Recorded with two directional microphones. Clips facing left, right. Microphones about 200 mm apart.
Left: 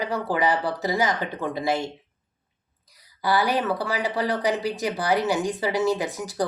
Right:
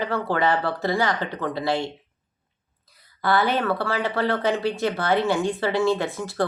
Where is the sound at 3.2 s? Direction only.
15° left (ahead or behind).